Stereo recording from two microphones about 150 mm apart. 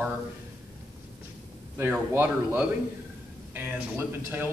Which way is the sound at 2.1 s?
15° right (ahead or behind).